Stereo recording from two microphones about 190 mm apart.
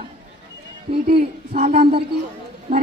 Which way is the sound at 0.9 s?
30° right (ahead or behind).